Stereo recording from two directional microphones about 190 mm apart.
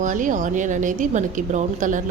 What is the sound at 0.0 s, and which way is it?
A woman's voice, 45° right (ahead or behind).